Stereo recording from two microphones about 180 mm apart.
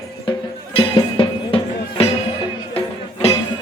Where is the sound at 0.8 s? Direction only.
30° left (ahead or behind).